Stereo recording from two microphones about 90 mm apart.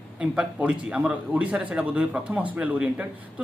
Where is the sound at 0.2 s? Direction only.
10° right (ahead or behind).